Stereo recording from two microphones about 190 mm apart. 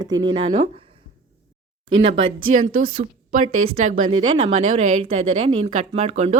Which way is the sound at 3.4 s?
35° right (ahead or behind).